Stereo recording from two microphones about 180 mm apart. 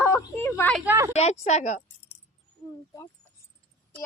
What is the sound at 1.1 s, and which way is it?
Speech, 35° left (ahead or behind).